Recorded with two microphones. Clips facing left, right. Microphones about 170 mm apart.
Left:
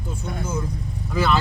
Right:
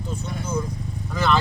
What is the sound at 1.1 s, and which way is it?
Speech, 5° left (ahead or behind).